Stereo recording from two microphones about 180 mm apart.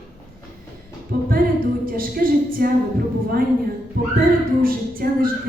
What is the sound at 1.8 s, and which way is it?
Speech, 55° right (ahead or behind).